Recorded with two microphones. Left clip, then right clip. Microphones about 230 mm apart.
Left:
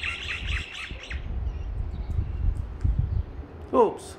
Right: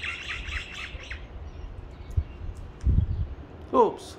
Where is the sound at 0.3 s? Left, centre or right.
Left.